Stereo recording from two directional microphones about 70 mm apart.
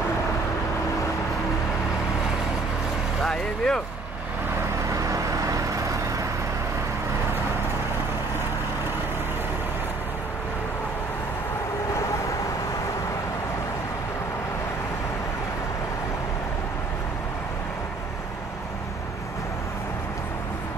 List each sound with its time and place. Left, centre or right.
3.3 s speech: centre
4.9 s vehicle: right